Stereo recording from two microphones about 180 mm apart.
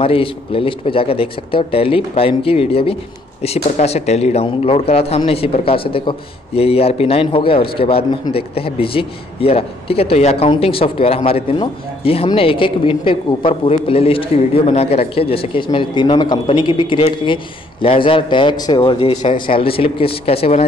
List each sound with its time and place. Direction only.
0.0 s speech: 30° left (ahead or behind)